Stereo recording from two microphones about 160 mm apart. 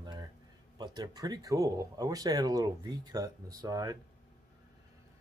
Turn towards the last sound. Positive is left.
turn(degrees=-20)  # may be behind; listen again after turning